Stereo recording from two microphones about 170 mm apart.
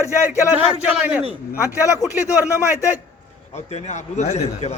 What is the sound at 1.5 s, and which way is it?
Speech, 20° left (ahead or behind).